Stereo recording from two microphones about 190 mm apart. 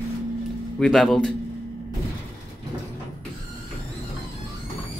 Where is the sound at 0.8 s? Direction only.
Centre (ahead or behind).